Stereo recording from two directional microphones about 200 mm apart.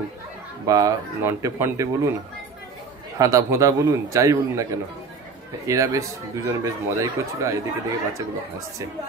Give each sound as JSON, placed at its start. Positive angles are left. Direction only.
{"t": 0.7, "sound": "speech", "side_deg": -15}
{"t": 3.2, "sound": "speech", "side_deg": -15}